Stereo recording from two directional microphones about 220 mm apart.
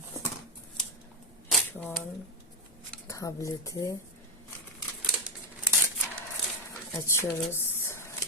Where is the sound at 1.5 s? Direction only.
5° left (ahead or behind).